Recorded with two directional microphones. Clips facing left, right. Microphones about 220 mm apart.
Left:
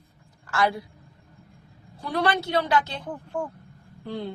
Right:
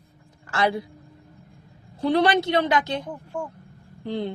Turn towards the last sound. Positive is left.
turn(degrees=-20)  # may be behind; listen again after turning